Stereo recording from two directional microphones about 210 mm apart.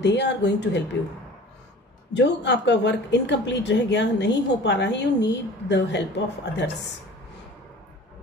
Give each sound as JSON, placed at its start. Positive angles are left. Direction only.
{"t": 0.0, "sound": "a woman's voice", "side_deg": 55}
{"t": 2.1, "sound": "a woman's voice", "side_deg": 55}